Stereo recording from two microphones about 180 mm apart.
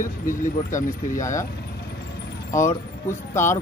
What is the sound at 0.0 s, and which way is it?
Speech, 50° left (ahead or behind).